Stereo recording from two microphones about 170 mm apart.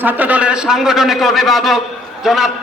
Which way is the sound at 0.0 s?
10° right (ahead or behind).